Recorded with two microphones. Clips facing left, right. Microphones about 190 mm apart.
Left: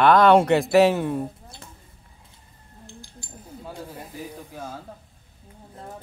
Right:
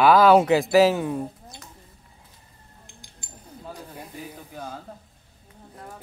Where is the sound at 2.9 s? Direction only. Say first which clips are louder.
Left 11 dB; 15° right (ahead or behind).